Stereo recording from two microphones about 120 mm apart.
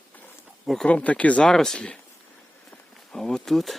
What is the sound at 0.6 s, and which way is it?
Speech, centre (ahead or behind).